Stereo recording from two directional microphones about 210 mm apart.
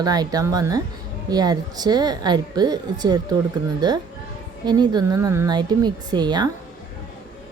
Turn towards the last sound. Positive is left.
turn(degrees=-20)  # may be behind; listen again after turning